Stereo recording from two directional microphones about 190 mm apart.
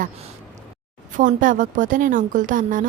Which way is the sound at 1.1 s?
45° right (ahead or behind).